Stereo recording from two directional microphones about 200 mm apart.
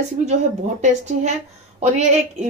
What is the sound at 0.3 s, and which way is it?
A woman's voice, 35° right (ahead or behind).